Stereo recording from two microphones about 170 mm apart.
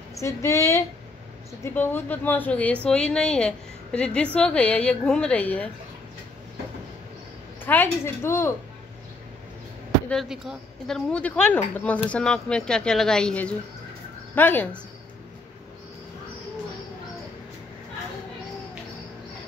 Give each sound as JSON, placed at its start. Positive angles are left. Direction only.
{"t": 0.1, "sound": "speech", "side_deg": 15}
{"t": 7.6, "sound": "speech", "side_deg": 10}
{"t": 10.0, "sound": "a woman's voice", "side_deg": 0}
{"t": 11.1, "sound": "speech", "side_deg": 10}